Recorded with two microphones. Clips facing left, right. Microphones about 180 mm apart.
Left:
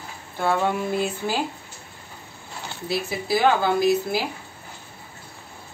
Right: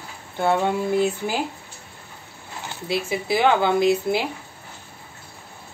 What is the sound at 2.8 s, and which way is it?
Speech, 20° right (ahead or behind).